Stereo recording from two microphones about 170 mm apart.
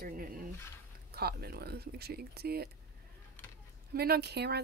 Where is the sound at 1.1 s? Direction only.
65° right (ahead or behind).